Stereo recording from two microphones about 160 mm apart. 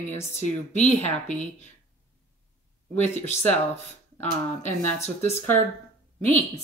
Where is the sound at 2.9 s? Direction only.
45° left (ahead or behind).